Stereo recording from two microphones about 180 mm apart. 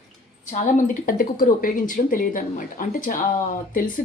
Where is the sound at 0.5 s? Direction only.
45° left (ahead or behind).